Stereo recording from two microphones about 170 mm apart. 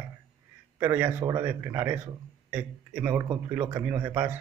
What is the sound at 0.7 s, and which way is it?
A man's voice, 10° right (ahead or behind).